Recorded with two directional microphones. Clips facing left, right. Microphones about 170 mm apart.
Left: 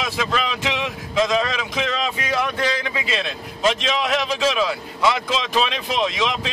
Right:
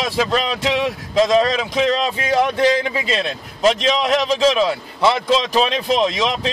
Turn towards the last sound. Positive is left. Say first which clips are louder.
# right 4 dB
turn(degrees=-40)  # may be behind; listen again after turning